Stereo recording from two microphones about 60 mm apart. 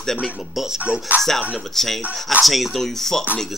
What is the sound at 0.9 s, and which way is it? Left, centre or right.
Speech, right.